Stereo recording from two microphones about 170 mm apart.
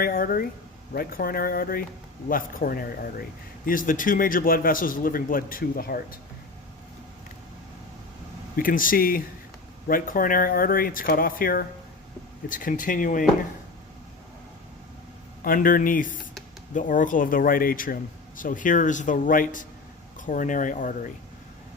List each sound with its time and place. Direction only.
0.0 s a man's voice: 60° left (ahead or behind)
8.5 s a man's voice: 55° left (ahead or behind)
15.4 s speech: 55° left (ahead or behind)